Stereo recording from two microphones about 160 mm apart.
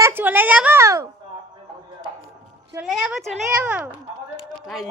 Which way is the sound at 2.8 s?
5° right (ahead or behind).